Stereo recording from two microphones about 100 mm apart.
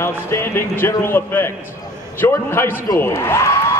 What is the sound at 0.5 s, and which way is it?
Speech, 20° left (ahead or behind).